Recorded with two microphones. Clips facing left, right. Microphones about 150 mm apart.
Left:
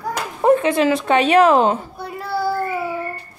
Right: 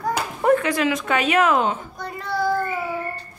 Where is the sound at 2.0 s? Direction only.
5° left (ahead or behind).